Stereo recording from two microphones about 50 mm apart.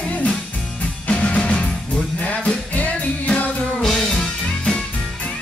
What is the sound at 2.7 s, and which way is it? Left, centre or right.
Music, left.